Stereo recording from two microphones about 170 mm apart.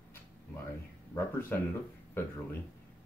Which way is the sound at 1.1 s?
10° left (ahead or behind).